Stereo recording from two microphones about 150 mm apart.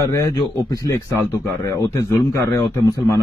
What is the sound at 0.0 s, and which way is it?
A man's voice, 25° left (ahead or behind).